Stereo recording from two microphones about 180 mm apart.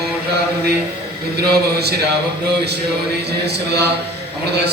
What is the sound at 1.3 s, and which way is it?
Speech, 60° right (ahead or behind).